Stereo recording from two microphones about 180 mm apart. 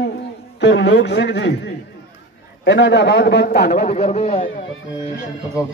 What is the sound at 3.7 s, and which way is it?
Speech, 40° left (ahead or behind).